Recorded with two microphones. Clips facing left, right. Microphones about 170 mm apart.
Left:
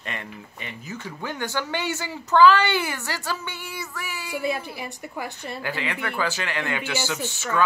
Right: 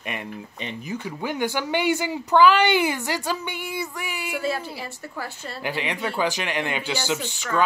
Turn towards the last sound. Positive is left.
turn(degrees=-15)  # may be behind; listen again after turning